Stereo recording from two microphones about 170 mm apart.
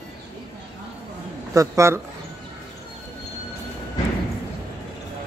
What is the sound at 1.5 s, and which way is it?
Speech, 20° right (ahead or behind).